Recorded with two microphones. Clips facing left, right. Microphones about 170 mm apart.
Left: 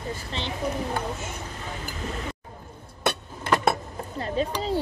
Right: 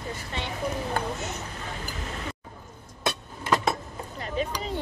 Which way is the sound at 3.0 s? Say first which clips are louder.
Left 3 dB; 65° left (ahead or behind).